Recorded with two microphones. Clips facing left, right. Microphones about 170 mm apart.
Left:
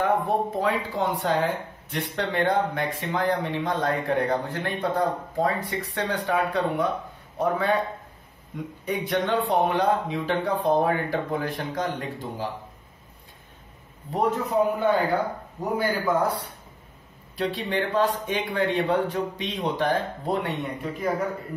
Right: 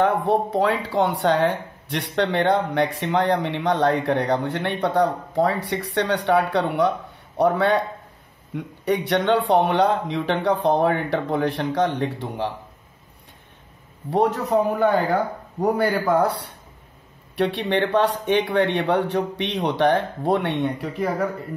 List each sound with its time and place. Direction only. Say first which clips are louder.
0.0 s speech: right 4 dB; 75° right (ahead or behind)
8.8 s speech: right 6 dB; 75° right (ahead or behind)
14.1 s speech: right 4 dB; 75° right (ahead or behind)